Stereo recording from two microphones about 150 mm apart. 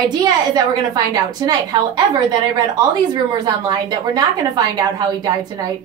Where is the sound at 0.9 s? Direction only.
25° right (ahead or behind).